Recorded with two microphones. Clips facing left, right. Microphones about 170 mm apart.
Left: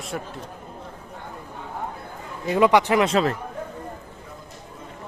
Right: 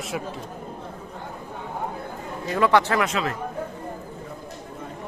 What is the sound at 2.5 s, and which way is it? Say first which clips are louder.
Speech: left 2 dB; 20° left (ahead or behind).